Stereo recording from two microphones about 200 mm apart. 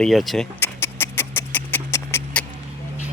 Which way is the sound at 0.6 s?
10° left (ahead or behind).